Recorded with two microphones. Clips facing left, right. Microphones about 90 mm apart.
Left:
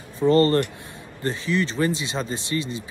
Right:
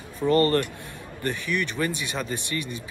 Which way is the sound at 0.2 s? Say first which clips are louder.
Left 3 dB; 25° left (ahead or behind).